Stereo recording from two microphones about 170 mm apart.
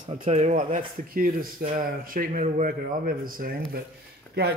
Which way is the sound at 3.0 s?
55° right (ahead or behind).